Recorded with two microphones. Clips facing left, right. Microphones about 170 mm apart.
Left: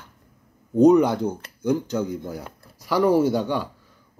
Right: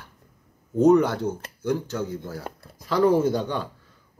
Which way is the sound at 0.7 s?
15° left (ahead or behind).